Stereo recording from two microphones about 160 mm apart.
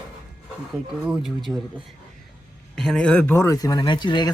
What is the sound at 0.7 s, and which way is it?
Speech, 5° right (ahead or behind).